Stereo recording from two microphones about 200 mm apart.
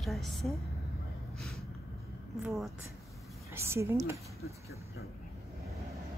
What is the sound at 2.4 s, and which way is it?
Speech, centre (ahead or behind).